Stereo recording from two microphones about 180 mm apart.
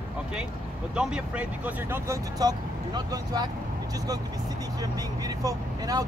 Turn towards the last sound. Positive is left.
turn(degrees=-20)  # may be behind; listen again after turning